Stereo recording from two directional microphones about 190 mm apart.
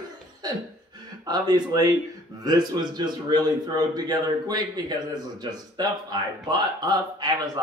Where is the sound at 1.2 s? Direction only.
20° right (ahead or behind).